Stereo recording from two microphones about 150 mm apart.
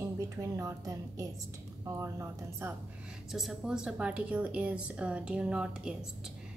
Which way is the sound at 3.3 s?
5° right (ahead or behind).